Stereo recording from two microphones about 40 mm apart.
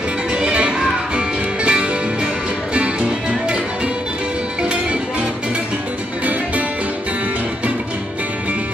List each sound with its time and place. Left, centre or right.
0.3 s music: right
4.6 s music: right